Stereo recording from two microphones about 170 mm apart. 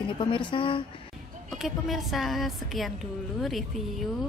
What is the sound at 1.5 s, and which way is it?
A woman's voice, centre (ahead or behind).